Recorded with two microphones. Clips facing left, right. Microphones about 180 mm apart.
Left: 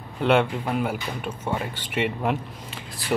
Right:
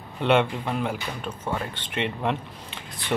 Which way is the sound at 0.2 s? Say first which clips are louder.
Left 1 dB; centre (ahead or behind).